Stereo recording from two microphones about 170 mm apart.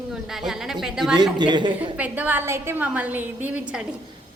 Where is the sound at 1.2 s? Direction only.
25° right (ahead or behind).